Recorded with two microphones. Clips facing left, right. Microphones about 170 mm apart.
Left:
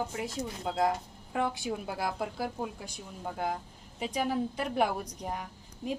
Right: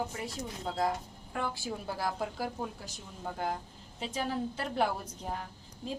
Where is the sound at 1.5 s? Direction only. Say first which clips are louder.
Left 2 dB; 20° left (ahead or behind).